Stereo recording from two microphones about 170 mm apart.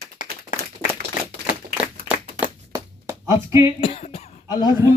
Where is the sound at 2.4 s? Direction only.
20° right (ahead or behind).